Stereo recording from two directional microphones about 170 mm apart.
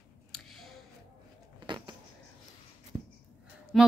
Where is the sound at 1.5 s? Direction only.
25° right (ahead or behind).